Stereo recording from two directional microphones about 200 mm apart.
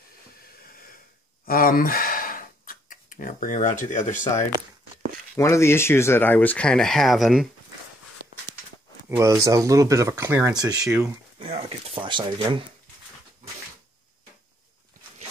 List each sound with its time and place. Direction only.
1.4 s a sound: 45° left (ahead or behind)
5.3 s speech: 15° left (ahead or behind)
9.1 s speech: 15° right (ahead or behind)